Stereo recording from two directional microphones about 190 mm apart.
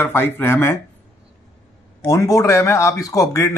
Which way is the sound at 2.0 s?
15° left (ahead or behind).